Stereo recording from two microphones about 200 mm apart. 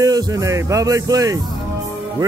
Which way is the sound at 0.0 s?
15° right (ahead or behind).